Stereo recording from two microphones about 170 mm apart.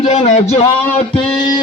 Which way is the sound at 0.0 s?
45° left (ahead or behind).